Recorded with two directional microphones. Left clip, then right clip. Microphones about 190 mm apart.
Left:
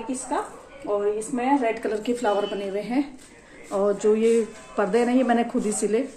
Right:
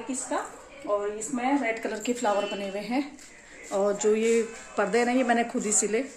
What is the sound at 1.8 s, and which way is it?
A woman's voice, 5° right (ahead or behind).